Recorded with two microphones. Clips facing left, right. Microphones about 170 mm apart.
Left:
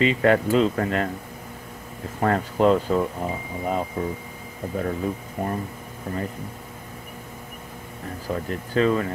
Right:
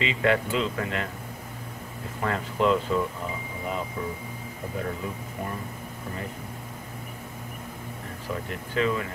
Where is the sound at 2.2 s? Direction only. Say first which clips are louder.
Left 6 dB; 40° left (ahead or behind).